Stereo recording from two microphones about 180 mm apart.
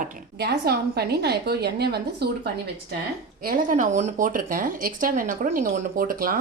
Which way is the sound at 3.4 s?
50° right (ahead or behind).